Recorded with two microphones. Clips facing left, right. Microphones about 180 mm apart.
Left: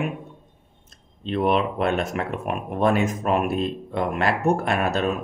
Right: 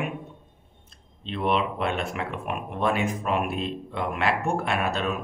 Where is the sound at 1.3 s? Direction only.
45° left (ahead or behind).